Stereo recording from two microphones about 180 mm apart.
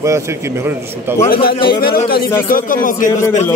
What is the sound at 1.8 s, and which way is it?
Speech, 55° left (ahead or behind).